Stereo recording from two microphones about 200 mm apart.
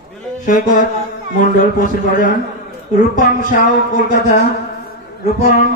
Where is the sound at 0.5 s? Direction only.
40° left (ahead or behind).